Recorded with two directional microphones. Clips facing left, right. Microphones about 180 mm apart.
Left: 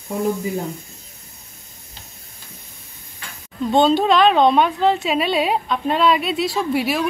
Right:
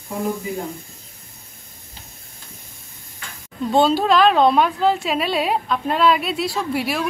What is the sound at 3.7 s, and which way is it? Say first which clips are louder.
A woman's voice: left 1 dB; centre (ahead or behind).